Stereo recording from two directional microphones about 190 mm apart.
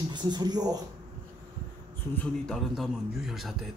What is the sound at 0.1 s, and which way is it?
Speech, 20° right (ahead or behind).